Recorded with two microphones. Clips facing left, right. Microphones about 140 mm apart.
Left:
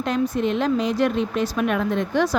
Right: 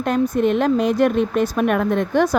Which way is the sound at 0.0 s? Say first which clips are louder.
Right 4 dB; 50° right (ahead or behind).